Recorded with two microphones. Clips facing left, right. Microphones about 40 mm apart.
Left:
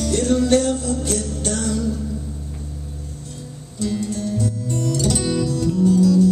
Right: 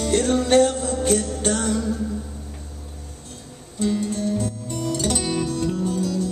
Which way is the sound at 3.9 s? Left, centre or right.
Right.